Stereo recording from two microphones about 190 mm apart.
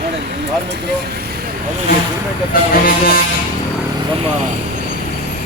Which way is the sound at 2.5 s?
50° left (ahead or behind).